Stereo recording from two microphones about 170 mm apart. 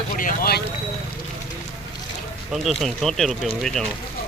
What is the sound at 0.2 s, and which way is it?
Speech, 60° left (ahead or behind).